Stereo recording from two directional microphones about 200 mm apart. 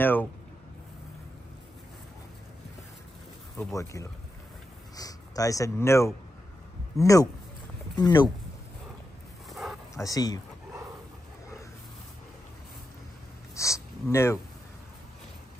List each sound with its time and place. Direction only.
0.0 s speech: 10° left (ahead or behind)
3.5 s speech: 15° left (ahead or behind)
9.5 s dog: centre (ahead or behind)
9.9 s speech: 20° left (ahead or behind)
13.6 s a sound: 15° left (ahead or behind)